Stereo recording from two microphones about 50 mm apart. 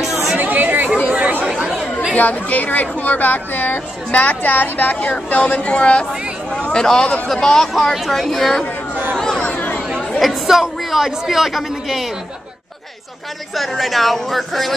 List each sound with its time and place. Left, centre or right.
0.4 s chatter: right
2.1 s a man's voice: left; by 8.6 s centre
9.1 s chatter: centre
9.5 s chatter: left
10.2 s a man's voice: centre
13.6 s a man's voice: centre